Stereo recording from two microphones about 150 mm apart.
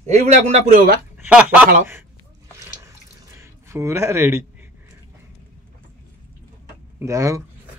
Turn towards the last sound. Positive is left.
turn(degrees=-20)  # may be behind; listen again after turning